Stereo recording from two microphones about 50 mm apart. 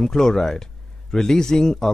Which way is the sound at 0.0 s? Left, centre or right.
Centre.